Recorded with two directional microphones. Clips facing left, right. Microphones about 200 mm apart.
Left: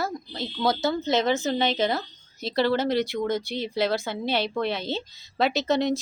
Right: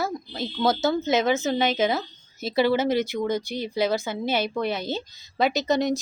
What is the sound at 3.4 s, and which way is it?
Speech, 45° right (ahead or behind).